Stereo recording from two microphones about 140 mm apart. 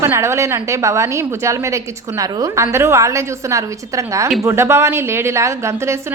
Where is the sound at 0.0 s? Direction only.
20° right (ahead or behind).